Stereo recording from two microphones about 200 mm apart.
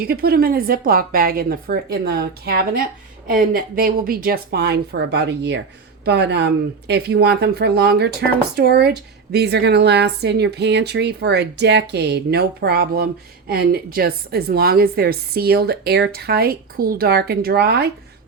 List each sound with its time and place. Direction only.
0.0 s speech: 50° right (ahead or behind)